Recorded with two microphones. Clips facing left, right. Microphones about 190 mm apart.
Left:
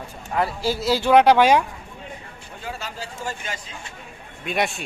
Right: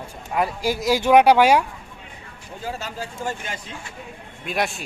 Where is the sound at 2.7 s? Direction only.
45° right (ahead or behind).